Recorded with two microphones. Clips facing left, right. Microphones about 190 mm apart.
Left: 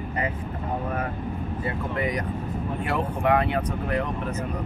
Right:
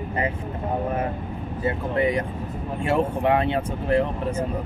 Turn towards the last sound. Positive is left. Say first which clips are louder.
# right 5 dB
turn(degrees=-30)  # may be behind; listen again after turning